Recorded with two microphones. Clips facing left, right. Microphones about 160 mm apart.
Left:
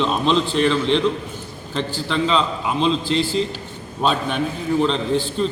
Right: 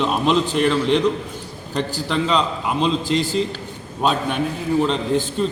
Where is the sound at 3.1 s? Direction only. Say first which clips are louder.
Even; 45° right (ahead or behind).